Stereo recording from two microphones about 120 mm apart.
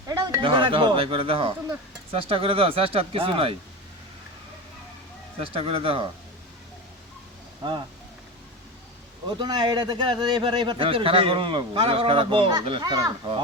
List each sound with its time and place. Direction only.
0.3 s a man's voice: 40° right (ahead or behind)
5.4 s a man's voice: 50° right (ahead or behind)
9.4 s a man's voice: 35° right (ahead or behind)